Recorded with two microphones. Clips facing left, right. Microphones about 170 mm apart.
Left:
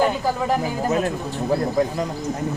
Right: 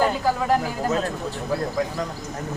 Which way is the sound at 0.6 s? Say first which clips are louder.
Left 2 dB; 15° left (ahead or behind).